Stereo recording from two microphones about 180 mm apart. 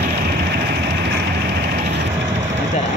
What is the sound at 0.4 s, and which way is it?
Vehicle, 70° right (ahead or behind).